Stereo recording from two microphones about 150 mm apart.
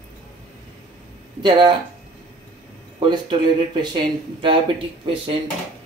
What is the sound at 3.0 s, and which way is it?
Speech, 30° right (ahead or behind).